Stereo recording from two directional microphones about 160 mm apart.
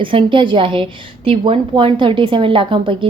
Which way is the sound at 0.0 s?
30° right (ahead or behind).